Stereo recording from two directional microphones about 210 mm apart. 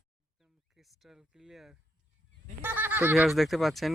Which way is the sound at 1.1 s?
5° right (ahead or behind).